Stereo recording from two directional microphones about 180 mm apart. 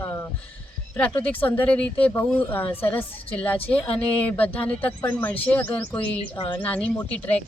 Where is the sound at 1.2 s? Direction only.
10° left (ahead or behind).